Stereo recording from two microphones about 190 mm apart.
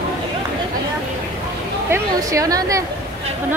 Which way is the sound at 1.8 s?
15° right (ahead or behind).